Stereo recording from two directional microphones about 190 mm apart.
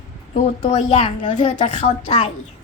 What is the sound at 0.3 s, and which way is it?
A woman's voice, 30° left (ahead or behind).